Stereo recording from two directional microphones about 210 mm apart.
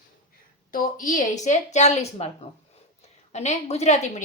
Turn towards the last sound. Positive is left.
turn(degrees=35)  # may be behind; listen again after turning